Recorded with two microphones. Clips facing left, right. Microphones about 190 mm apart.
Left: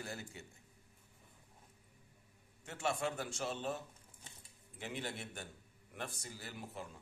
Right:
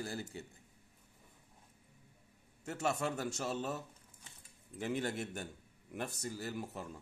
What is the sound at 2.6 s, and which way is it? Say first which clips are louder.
A man's voice: right 2 dB; 40° right (ahead or behind).